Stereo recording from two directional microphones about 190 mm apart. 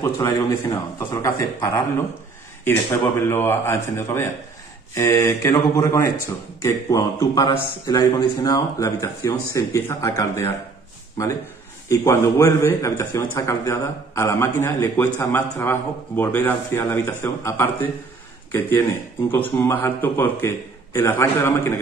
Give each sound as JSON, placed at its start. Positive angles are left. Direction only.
{"t": 0.0, "sound": "a man's voice", "side_deg": 20}
{"t": 11.9, "sound": "a man's voice", "side_deg": 15}
{"t": 19.3, "sound": "a man's voice", "side_deg": 10}